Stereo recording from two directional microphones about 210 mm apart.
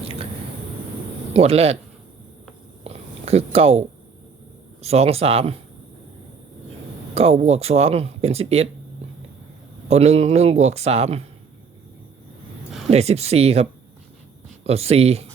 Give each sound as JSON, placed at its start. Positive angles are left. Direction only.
{"t": 0.0, "sound": "squish", "side_deg": -30}
{"t": 1.3, "sound": "speech", "side_deg": -30}
{"t": 2.8, "sound": "a sound", "side_deg": -30}
{"t": 4.8, "sound": "speech", "side_deg": -30}
{"t": 7.1, "sound": "speech", "side_deg": -30}
{"t": 9.9, "sound": "speech", "side_deg": -30}
{"t": 12.9, "sound": "speech", "side_deg": -30}